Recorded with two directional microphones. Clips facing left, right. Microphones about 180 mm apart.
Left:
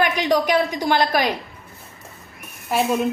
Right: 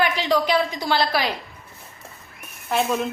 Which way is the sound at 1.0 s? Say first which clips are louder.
Left 3 dB; 45° left (ahead or behind).